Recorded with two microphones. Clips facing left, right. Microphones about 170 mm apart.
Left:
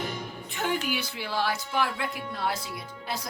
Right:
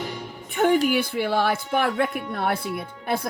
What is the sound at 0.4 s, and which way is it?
Music, 55° right (ahead or behind).